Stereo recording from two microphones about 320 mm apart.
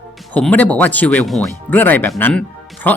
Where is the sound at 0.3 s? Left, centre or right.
Centre.